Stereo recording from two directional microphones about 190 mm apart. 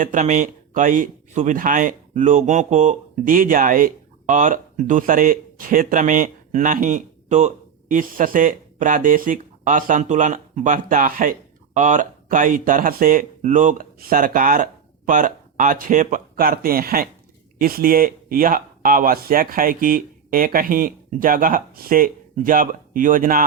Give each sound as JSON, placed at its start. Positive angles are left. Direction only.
{"t": 0.0, "sound": "speech", "side_deg": -40}